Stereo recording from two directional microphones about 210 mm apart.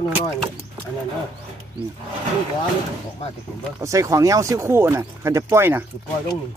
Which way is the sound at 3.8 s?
15° right (ahead or behind).